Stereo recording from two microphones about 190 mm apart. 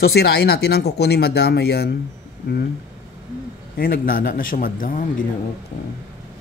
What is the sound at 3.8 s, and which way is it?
Speech, 50° left (ahead or behind).